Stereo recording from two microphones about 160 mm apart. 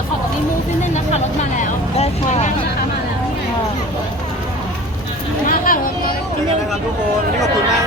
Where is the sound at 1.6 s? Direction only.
45° left (ahead or behind).